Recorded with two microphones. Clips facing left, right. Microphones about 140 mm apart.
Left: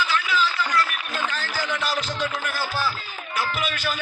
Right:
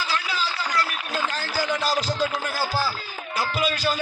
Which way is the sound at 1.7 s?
25° right (ahead or behind).